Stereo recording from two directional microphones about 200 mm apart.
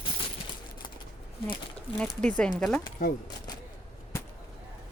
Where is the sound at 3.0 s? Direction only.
45° left (ahead or behind).